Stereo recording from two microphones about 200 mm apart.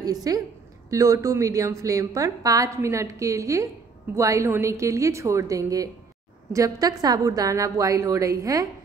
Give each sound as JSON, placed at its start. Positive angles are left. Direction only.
{"t": 0.0, "sound": "a woman's voice", "side_deg": -20}